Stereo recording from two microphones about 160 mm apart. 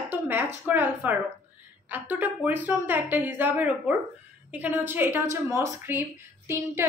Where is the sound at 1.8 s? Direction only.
10° right (ahead or behind).